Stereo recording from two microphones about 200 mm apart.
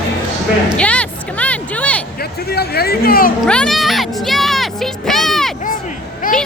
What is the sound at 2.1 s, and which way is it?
Speech, 50° left (ahead or behind).